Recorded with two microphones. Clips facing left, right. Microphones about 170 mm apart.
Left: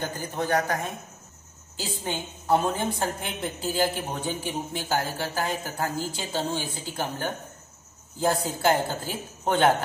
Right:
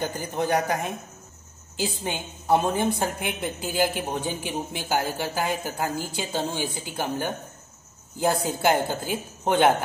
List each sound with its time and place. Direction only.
0.0 s a woman's voice: 15° right (ahead or behind)
1.8 s a woman's voice: 15° right (ahead or behind)